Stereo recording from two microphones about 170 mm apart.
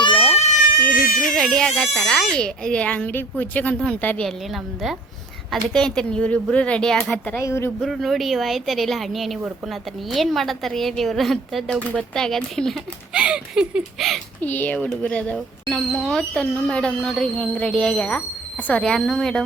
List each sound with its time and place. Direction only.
0.3 s a sound: 40° left (ahead or behind)
1.0 s baby cry: 60° left (ahead or behind)
1.3 s a woman's voice: 5° left (ahead or behind)
7.8 s speech: centre (ahead or behind)
14.4 s speech: 10° left (ahead or behind)